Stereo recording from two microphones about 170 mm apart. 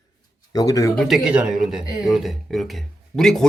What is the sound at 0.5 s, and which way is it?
Speech, 20° left (ahead or behind).